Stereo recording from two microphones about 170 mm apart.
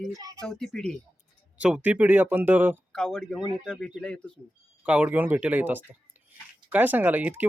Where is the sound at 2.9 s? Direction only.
5° left (ahead or behind).